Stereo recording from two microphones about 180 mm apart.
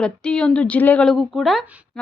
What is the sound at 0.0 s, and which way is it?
A woman's voice, 5° left (ahead or behind).